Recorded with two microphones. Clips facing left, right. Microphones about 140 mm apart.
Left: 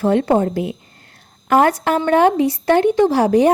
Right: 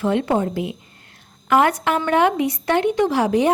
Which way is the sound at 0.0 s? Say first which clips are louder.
Left 4 dB; 40° left (ahead or behind).